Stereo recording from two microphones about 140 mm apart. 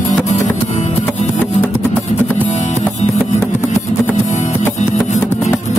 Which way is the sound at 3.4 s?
15° left (ahead or behind).